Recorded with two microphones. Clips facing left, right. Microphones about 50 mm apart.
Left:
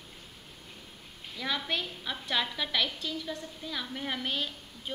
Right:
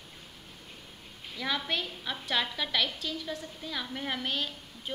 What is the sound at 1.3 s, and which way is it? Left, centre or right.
A woman's voice, centre.